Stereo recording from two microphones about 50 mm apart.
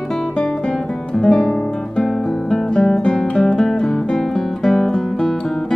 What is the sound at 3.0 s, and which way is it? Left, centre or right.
Music, centre.